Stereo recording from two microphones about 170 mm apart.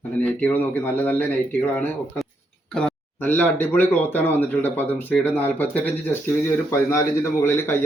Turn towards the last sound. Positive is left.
turn(degrees=15)  # may be behind; listen again after turning